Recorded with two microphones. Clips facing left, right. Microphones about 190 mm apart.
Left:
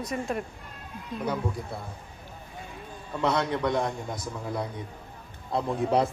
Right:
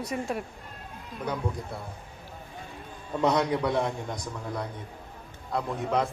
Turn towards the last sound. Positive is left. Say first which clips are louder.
# left 3 dB
turn(degrees=35)  # may be behind; listen again after turning